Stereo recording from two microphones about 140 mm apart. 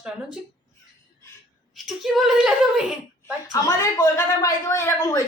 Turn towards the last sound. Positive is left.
turn(degrees=20)  # may be behind; listen again after turning